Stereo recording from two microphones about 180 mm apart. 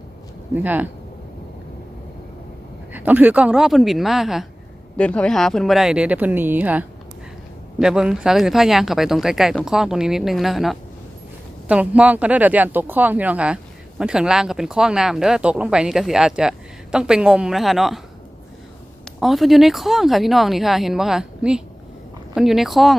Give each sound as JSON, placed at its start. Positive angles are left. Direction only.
{"t": 0.5, "sound": "speech", "side_deg": -10}
{"t": 2.9, "sound": "speech", "side_deg": -10}
{"t": 19.2, "sound": "speech", "side_deg": 0}